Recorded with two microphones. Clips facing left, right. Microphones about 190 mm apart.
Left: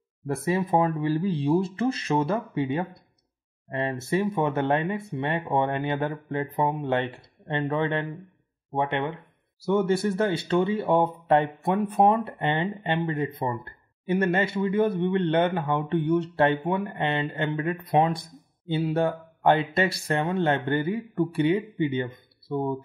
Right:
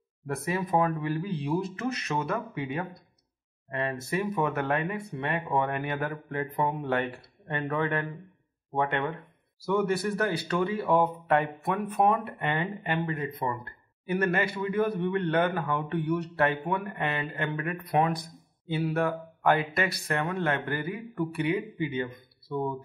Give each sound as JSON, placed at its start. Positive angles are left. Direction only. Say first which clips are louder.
{"t": 0.3, "sound": "speech", "louder": "left 4 dB", "side_deg": 25}